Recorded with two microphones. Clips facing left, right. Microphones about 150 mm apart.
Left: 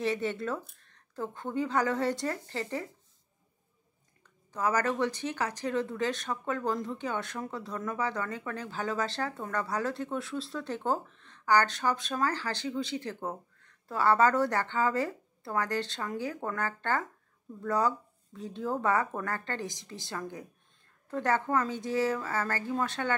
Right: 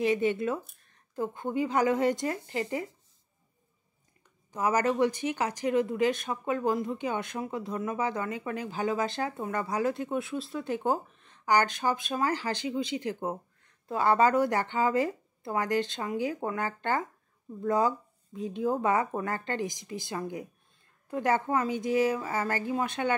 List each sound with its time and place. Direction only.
0.0 s speech: 15° right (ahead or behind)
4.5 s speech: 15° right (ahead or behind)